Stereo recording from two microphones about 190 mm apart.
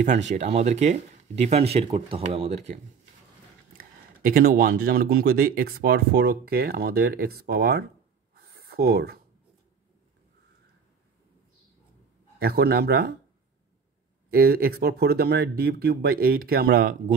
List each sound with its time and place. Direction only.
0.3 s speech: 35° right (ahead or behind)
4.3 s speech: 55° right (ahead or behind)
12.4 s speech: 55° right (ahead or behind)
14.3 s speech: 50° right (ahead or behind)